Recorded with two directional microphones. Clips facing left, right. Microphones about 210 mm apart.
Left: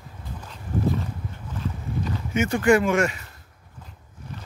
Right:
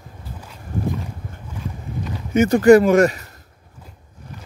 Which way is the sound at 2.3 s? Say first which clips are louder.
Right 8 dB; 40° right (ahead or behind).